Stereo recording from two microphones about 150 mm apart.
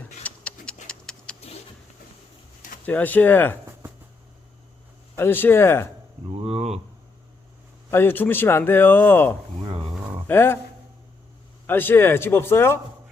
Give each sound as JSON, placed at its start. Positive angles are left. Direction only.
{"t": 0.3, "sound": "a sound", "side_deg": 5}
{"t": 2.8, "sound": "a man's voice", "side_deg": 10}
{"t": 5.1, "sound": "a man's voice", "side_deg": 15}
{"t": 6.2, "sound": "speech", "side_deg": -40}
{"t": 7.9, "sound": "a man's voice", "side_deg": 15}
{"t": 11.6, "sound": "a man's voice", "side_deg": 15}